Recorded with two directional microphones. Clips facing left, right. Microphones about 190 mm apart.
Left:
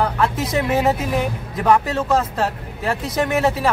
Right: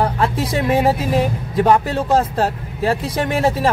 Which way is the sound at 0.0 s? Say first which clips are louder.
Right 1 dB; 30° right (ahead or behind).